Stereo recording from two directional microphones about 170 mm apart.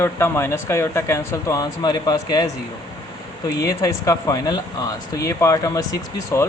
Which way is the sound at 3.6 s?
20° left (ahead or behind).